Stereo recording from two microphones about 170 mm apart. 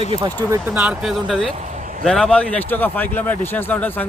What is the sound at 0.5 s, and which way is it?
Speech, 10° right (ahead or behind).